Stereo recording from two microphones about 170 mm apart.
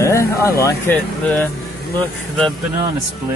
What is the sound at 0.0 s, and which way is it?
Speech, 15° left (ahead or behind).